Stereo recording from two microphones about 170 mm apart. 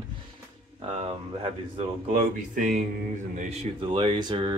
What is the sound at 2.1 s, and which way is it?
Speech, 50° right (ahead or behind).